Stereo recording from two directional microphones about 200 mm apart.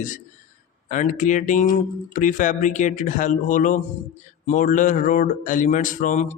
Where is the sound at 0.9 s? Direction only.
40° left (ahead or behind).